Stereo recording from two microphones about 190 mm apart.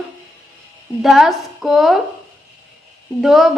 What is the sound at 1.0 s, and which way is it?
Speech, centre (ahead or behind).